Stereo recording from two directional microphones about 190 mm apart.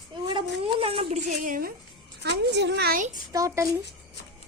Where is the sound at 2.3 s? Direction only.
65° right (ahead or behind).